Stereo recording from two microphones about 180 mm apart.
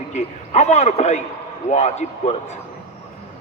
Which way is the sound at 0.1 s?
40° left (ahead or behind).